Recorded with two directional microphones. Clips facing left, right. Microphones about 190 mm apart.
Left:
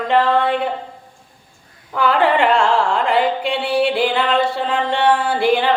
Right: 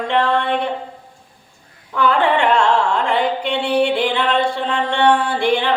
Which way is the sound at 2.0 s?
5° left (ahead or behind).